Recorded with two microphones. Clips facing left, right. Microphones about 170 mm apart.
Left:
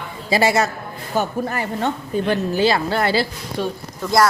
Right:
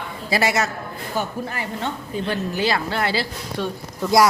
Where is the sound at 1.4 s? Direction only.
45° left (ahead or behind).